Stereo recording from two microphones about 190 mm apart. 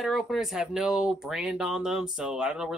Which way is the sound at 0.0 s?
Centre (ahead or behind).